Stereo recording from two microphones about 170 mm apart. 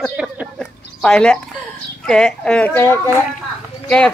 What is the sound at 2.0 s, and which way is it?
Speech, 5° left (ahead or behind).